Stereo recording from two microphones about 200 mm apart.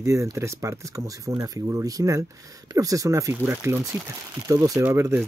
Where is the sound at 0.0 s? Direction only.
15° right (ahead or behind).